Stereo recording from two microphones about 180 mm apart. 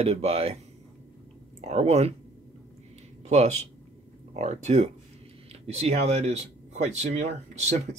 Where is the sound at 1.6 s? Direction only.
35° right (ahead or behind).